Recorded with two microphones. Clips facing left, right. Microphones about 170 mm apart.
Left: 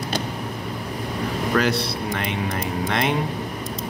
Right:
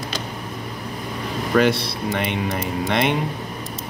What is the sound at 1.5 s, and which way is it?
Speech, centre (ahead or behind).